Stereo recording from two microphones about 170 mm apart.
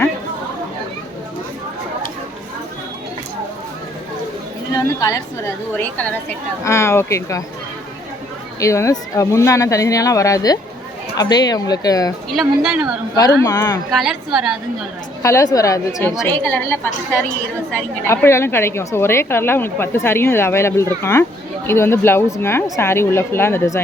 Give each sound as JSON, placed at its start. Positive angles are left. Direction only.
{"t": 4.7, "sound": "chatter", "side_deg": 20}
{"t": 5.7, "sound": "a woman's voice", "side_deg": 10}
{"t": 8.6, "sound": "speech", "side_deg": 20}
{"t": 12.3, "sound": "speech", "side_deg": 0}
{"t": 13.4, "sound": "a woman's voice", "side_deg": 15}
{"t": 13.9, "sound": "speech", "side_deg": -5}
{"t": 15.2, "sound": "a woman's voice", "side_deg": 15}